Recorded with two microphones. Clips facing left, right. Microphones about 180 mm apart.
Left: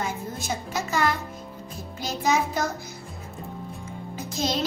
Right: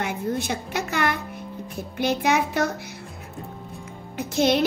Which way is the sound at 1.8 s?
60° right (ahead or behind).